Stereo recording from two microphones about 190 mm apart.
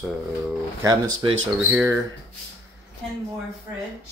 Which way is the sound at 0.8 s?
20° right (ahead or behind).